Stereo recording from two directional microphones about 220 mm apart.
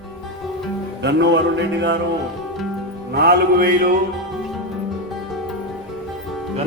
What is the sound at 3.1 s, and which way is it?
Mantra, 45° right (ahead or behind).